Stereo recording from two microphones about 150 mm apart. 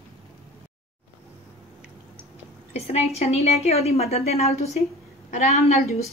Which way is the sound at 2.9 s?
45° left (ahead or behind).